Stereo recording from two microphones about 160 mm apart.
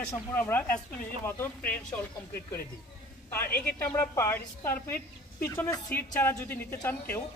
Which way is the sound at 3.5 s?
10° left (ahead or behind).